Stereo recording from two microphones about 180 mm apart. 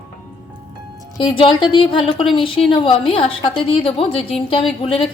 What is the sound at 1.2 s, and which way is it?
A woman's voice, 25° left (ahead or behind).